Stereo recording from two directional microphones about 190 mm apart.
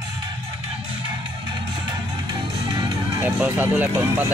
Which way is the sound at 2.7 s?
20° right (ahead or behind).